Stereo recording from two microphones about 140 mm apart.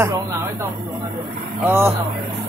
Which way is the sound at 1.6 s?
15° right (ahead or behind).